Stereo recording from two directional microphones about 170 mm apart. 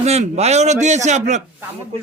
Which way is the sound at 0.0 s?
40° right (ahead or behind).